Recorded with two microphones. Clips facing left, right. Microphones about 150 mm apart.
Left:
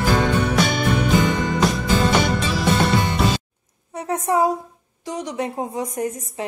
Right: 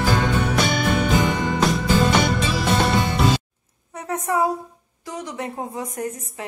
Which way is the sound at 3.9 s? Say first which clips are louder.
Left 3 dB; 20° left (ahead or behind).